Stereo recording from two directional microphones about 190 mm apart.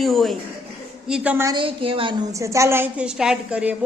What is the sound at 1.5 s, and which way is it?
A woman's voice, 30° right (ahead or behind).